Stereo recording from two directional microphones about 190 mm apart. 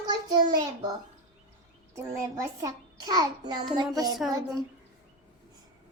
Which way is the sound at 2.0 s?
15° right (ahead or behind).